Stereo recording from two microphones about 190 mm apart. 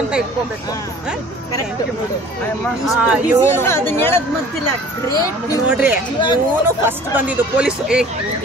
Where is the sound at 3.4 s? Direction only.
15° left (ahead or behind).